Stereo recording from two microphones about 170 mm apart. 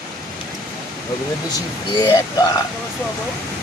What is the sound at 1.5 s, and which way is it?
Speech, 25° left (ahead or behind).